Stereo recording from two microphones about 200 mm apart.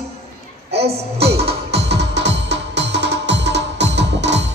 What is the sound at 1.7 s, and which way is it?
Music, 60° right (ahead or behind).